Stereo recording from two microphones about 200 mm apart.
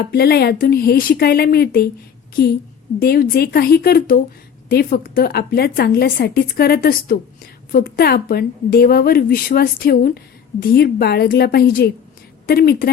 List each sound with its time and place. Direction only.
0.0 s a woman's voice: 50° left (ahead or behind)
3.0 s a woman's voice: 50° left (ahead or behind)